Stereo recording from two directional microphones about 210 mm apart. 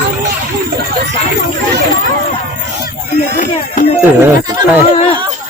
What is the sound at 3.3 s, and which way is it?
Speech, 40° left (ahead or behind).